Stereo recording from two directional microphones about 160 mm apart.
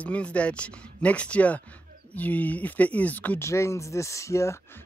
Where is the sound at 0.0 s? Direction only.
10° left (ahead or behind).